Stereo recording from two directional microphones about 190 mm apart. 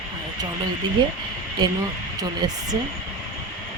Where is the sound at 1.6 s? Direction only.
20° right (ahead or behind).